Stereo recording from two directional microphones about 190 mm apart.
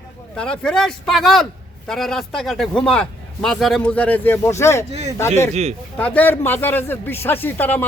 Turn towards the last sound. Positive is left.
turn(degrees=10)  # may be behind; listen again after turning